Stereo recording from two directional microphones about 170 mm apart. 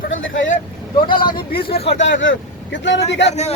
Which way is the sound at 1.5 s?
65° left (ahead or behind).